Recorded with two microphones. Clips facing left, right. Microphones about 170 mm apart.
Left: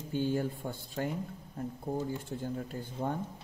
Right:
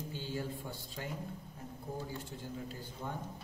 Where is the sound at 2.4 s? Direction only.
55° left (ahead or behind).